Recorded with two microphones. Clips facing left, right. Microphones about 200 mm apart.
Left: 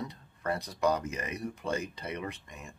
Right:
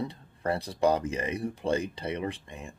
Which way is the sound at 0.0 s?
30° right (ahead or behind).